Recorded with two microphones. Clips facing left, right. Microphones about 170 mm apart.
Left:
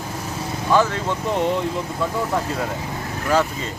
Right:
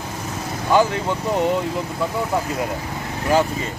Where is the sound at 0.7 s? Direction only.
15° right (ahead or behind).